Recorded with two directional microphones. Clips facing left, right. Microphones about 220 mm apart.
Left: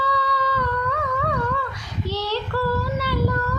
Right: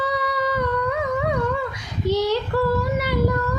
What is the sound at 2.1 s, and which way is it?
Female singing, 15° right (ahead or behind).